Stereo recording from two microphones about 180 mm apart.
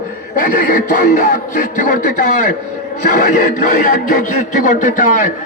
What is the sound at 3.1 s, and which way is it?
Speech, 45° left (ahead or behind).